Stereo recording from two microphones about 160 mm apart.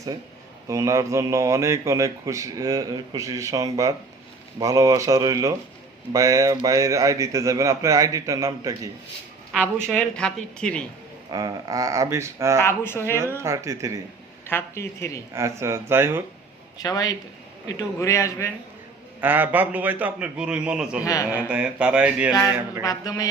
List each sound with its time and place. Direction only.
0.7 s speech: 20° right (ahead or behind)
9.5 s a man's voice: 10° right (ahead or behind)
9.9 s speech: 5° left (ahead or behind)
11.3 s speech: 25° right (ahead or behind)
12.6 s speech: 15° left (ahead or behind)
13.1 s a man's voice: 15° right (ahead or behind)
14.4 s speech: 15° left (ahead or behind)
15.4 s a man's voice: 20° right (ahead or behind)
16.7 s a man's voice: 25° left (ahead or behind)
19.2 s a man's voice: 10° right (ahead or behind)
21.0 s a man's voice: 20° left (ahead or behind)
21.2 s a man's voice: 10° right (ahead or behind)
22.8 s a man's voice: 20° left (ahead or behind)